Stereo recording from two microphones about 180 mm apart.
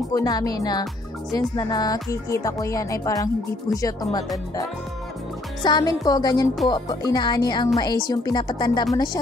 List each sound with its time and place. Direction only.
0.1 s speech: 20° left (ahead or behind)
5.6 s speech: 25° left (ahead or behind)